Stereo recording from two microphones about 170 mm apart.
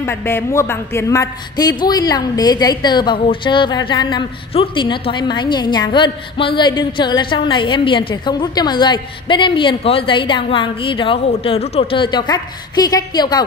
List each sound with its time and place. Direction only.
0.0 s a woman's voice: 15° left (ahead or behind)